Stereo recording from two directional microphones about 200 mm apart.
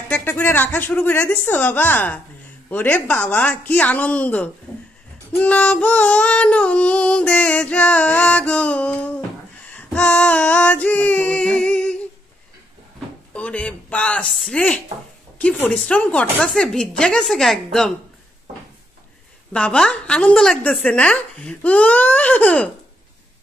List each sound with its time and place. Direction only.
0.1 s a woman's voice: 10° left (ahead or behind)
5.3 s female singing: 5° left (ahead or behind)
9.7 s a sound: 5° left (ahead or behind)
13.3 s female singing: 5° left (ahead or behind)
19.5 s a woman's voice: 5° left (ahead or behind)